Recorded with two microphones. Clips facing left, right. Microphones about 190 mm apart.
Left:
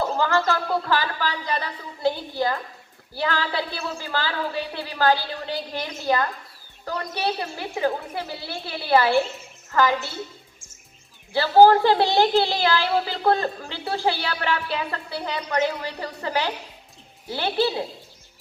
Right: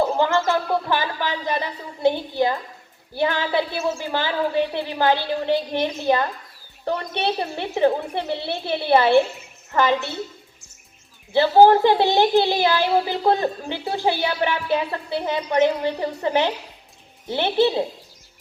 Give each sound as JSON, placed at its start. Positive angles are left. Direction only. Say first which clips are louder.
{"t": 0.0, "sound": "a woman's voice", "louder": "right 3 dB", "side_deg": -25}
{"t": 11.3, "sound": "a woman's voice", "louder": "right 1 dB", "side_deg": -20}